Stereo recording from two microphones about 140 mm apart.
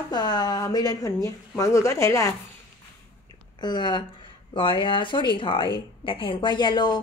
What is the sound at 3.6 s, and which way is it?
Speech, 30° left (ahead or behind).